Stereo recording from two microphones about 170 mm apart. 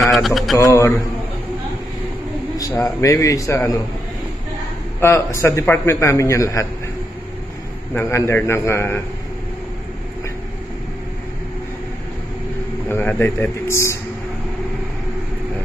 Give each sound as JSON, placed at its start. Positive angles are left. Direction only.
{"t": 0.0, "sound": "mantra", "side_deg": 0}
{"t": 0.6, "sound": "a man's voice", "side_deg": 15}
{"t": 2.5, "sound": "a man's voice", "side_deg": 15}
{"t": 5.0, "sound": "a man's voice", "side_deg": 15}
{"t": 7.9, "sound": "a man's voice", "side_deg": 15}
{"t": 12.9, "sound": "a man's voice", "side_deg": 10}